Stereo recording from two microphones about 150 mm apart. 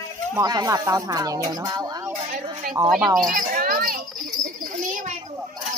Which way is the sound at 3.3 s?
75° right (ahead or behind).